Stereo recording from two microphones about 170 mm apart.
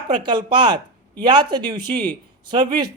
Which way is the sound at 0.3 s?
25° right (ahead or behind).